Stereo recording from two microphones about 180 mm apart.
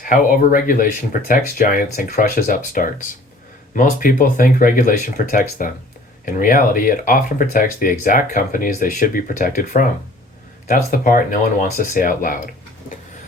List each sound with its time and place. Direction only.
0.0 s speech: 50° left (ahead or behind)